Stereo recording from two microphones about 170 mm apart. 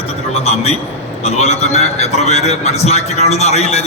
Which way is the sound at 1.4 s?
40° left (ahead or behind).